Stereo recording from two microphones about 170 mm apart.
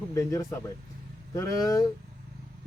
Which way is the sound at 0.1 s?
20° left (ahead or behind).